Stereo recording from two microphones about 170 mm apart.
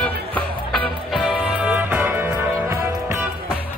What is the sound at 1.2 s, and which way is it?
Music, 10° right (ahead or behind).